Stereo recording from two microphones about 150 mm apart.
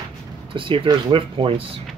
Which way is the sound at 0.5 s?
35° right (ahead or behind).